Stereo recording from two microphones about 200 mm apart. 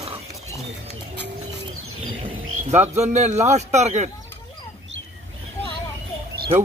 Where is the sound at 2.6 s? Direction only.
35° right (ahead or behind).